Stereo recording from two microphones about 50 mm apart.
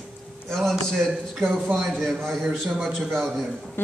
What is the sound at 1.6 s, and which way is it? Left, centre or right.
A man's voice, centre.